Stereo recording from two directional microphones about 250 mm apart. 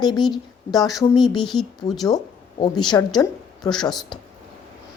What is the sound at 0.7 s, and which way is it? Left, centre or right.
Speech, centre.